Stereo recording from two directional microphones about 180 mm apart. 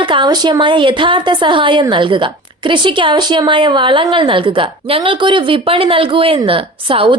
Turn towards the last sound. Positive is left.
turn(degrees=-30)  # may be behind; listen again after turning